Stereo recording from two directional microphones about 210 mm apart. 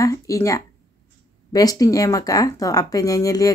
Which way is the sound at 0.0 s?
15° left (ahead or behind).